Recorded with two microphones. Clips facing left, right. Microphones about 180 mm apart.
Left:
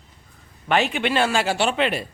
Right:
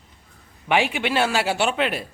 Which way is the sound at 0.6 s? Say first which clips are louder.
Even; 10° right (ahead or behind).